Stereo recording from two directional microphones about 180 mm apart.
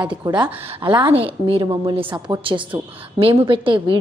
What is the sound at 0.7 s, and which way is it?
A woman's voice, 25° right (ahead or behind).